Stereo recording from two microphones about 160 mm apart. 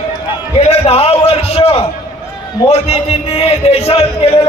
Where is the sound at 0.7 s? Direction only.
40° left (ahead or behind).